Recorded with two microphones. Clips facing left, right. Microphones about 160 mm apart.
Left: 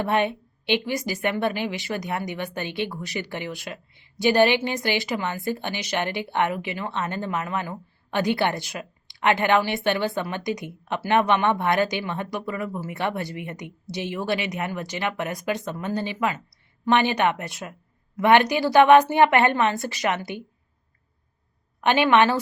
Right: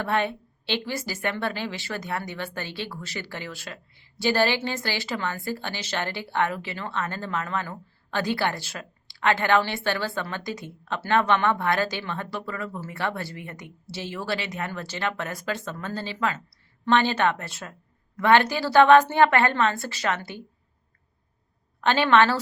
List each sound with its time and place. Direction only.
0.0 s a woman's voice: 20° left (ahead or behind)
21.8 s a woman's voice: 15° left (ahead or behind)